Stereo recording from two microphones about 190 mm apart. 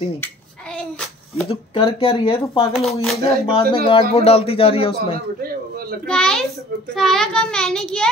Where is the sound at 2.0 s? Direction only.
30° left (ahead or behind).